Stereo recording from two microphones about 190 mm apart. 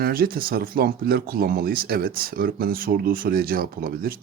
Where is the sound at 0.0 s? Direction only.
50° right (ahead or behind).